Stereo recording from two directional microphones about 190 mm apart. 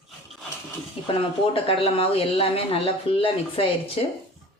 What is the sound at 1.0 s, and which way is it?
Speech, 30° left (ahead or behind).